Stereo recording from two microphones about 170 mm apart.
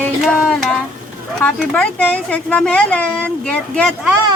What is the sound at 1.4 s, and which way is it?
A woman's voice, 5° left (ahead or behind).